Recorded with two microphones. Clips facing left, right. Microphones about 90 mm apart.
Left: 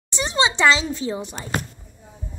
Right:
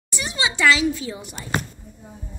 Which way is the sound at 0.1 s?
30° left (ahead or behind).